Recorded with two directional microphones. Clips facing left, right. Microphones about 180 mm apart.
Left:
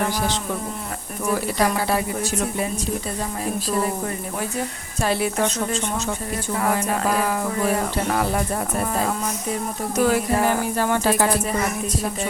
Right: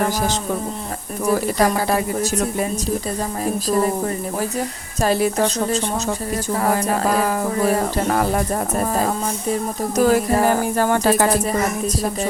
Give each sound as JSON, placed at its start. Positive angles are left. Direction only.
{"t": 0.0, "sound": "speech", "side_deg": -45}